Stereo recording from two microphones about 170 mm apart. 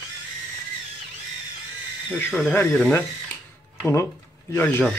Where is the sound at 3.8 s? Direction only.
15° left (ahead or behind).